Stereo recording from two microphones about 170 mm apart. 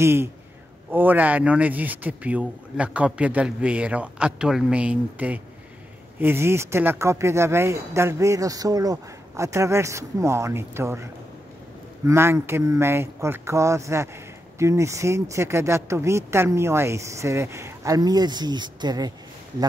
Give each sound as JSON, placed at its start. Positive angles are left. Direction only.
{"t": 0.0, "sound": "speech", "side_deg": -15}
{"t": 12.1, "sound": "speech", "side_deg": -15}